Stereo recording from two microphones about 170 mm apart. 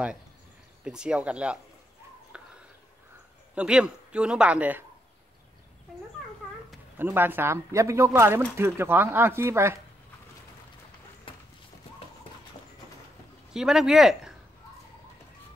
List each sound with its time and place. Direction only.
0.8 s speech: 5° right (ahead or behind)
2.3 s a sound: 5° right (ahead or behind)
3.5 s a man's voice: 5° right (ahead or behind)
7.0 s speech: 10° right (ahead or behind)
13.5 s a man's voice: 5° right (ahead or behind)